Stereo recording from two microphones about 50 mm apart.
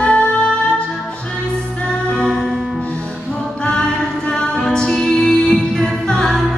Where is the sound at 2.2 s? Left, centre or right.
Centre.